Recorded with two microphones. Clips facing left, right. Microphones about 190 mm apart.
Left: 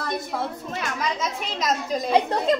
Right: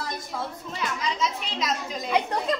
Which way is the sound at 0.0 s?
55° left (ahead or behind).